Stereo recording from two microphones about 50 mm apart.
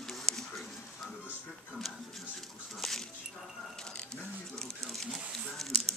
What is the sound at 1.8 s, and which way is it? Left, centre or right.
Music, centre.